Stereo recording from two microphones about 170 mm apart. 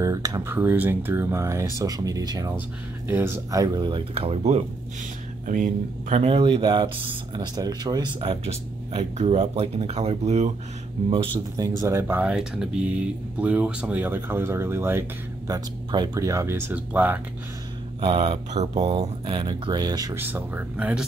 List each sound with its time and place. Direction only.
0.0 s speech: 20° right (ahead or behind); by 4.6 s 35° right (ahead or behind)
5.5 s speech: 50° right (ahead or behind)
6.2 s speech: 30° right (ahead or behind)
11.8 s speech: 15° right (ahead or behind)
18.0 s speech: 30° right (ahead or behind)
20.2 s speech: 10° right (ahead or behind)